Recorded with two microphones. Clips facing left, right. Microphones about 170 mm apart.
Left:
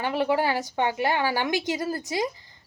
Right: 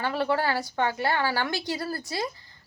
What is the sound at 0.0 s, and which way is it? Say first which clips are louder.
Speech: left 2 dB; 15° left (ahead or behind).